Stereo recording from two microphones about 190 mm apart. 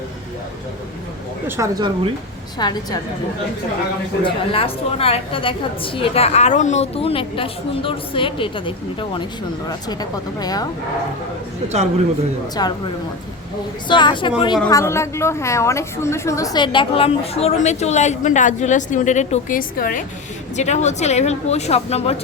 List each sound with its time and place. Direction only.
1.5 s speech: 15° right (ahead or behind)
2.6 s a woman's voice: 20° left (ahead or behind)
4.2 s a woman's voice: 30° left (ahead or behind)
12.6 s a woman's voice: 20° left (ahead or behind)
13.8 s a woman's voice: 25° left (ahead or behind)
14.7 s a woman's voice: 15° left (ahead or behind); by 22.1 s 35° left (ahead or behind)